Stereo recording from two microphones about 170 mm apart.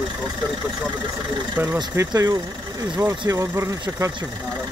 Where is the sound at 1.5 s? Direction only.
10° right (ahead or behind).